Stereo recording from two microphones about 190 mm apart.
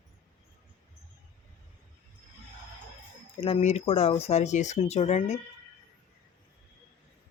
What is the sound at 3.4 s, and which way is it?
Speech, 35° left (ahead or behind).